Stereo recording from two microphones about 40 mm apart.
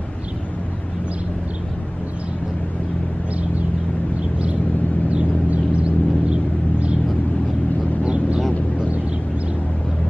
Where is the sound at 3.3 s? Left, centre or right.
Right.